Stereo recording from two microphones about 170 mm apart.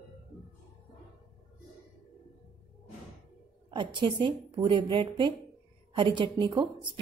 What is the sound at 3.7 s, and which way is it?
A woman's voice, 30° right (ahead or behind).